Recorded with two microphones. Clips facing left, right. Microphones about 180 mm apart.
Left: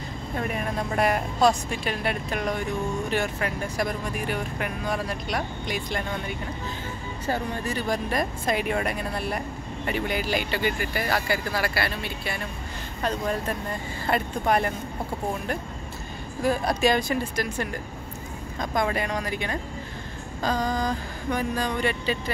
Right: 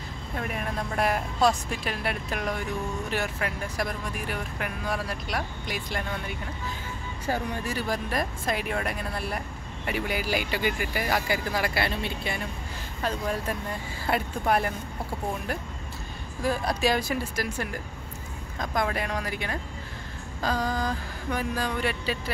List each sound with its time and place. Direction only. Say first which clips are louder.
0.4 s speech: left 3 dB; centre (ahead or behind); by 12.4 s 20° right (ahead or behind)
13.0 s speech: left 2 dB; 5° right (ahead or behind)
16.4 s speech: left 3 dB; centre (ahead or behind)